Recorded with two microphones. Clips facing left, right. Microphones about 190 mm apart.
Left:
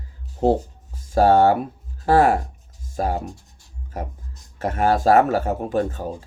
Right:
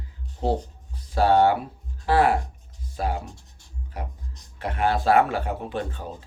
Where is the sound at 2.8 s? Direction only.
45° left (ahead or behind).